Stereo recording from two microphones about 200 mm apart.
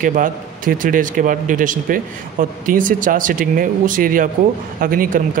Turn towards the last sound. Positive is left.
turn(degrees=-45)  # may be behind; listen again after turning